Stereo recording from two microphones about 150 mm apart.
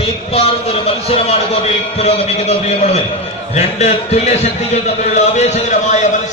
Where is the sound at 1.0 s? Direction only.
40° left (ahead or behind).